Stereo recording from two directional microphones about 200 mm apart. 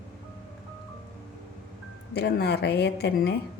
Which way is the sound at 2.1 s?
55° left (ahead or behind).